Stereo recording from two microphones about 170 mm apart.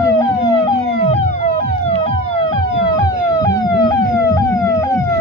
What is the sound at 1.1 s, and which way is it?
Emergency vehicle, 40° left (ahead or behind).